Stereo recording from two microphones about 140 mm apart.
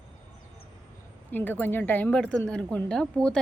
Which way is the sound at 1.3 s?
15° left (ahead or behind).